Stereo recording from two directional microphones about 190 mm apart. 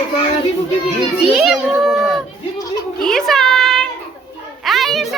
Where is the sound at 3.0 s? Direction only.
Centre (ahead or behind).